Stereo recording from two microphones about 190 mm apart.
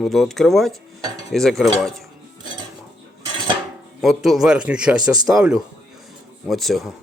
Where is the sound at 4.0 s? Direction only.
Centre (ahead or behind).